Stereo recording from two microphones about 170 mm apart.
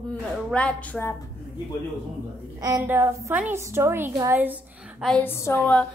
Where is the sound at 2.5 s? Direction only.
20° right (ahead or behind).